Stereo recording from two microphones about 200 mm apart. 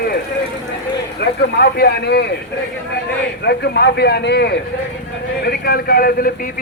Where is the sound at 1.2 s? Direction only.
60° left (ahead or behind).